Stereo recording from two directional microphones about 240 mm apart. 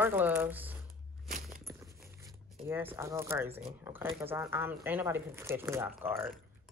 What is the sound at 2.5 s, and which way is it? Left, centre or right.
Speech, centre.